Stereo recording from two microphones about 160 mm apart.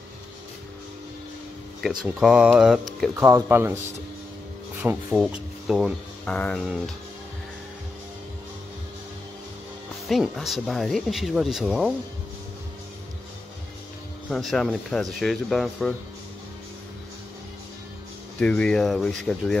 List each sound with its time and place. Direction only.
2.1 s speech: 5° right (ahead or behind)
3.2 s speech: 15° right (ahead or behind)
5.1 s speech: centre (ahead or behind)
10.0 s speech: centre (ahead or behind)
14.3 s speech: centre (ahead or behind)
18.4 s speech: 5° left (ahead or behind)